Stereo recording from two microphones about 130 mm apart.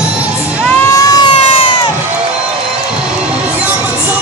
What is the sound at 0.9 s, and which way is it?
Vehicle, 30° left (ahead or behind).